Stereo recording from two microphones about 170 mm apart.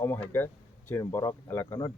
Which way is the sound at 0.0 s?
15° left (ahead or behind).